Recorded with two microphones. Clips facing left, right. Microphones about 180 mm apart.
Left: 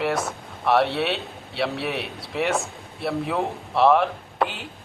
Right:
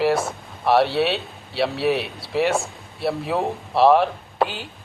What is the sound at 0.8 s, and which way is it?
Speech, centre (ahead or behind).